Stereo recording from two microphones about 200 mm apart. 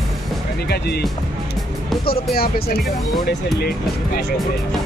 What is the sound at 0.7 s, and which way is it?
Speech, 55° left (ahead or behind).